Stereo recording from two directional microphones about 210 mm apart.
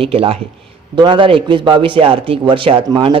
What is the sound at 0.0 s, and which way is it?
A man's voice, 25° right (ahead or behind).